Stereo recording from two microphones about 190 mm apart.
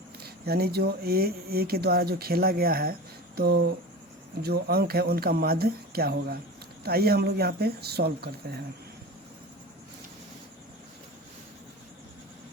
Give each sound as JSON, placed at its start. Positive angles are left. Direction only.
{"t": 0.2, "sound": "speech", "side_deg": -55}